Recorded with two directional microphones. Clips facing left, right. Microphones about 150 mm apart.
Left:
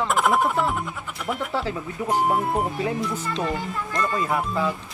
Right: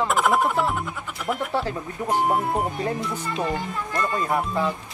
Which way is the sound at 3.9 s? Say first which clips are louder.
Even; 20° right (ahead or behind).